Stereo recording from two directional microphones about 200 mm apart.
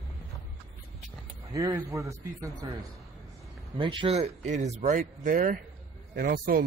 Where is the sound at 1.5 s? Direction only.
15° right (ahead or behind).